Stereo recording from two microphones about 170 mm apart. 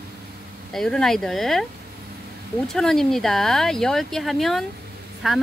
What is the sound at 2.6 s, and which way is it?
Speech, centre (ahead or behind).